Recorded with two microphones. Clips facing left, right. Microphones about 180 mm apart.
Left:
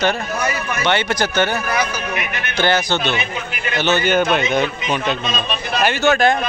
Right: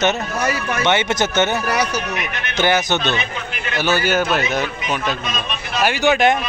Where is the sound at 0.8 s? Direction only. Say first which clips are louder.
Even; 20° right (ahead or behind).